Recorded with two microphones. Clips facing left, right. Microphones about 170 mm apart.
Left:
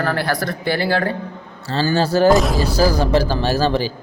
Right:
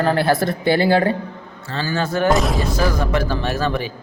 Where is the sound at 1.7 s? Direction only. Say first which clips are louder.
Left 5 dB; 35° left (ahead or behind).